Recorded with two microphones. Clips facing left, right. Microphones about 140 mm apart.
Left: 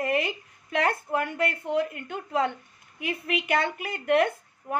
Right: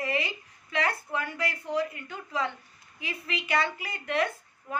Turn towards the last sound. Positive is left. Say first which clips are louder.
# left 4 dB
turn(degrees=60)  # may be behind; listen again after turning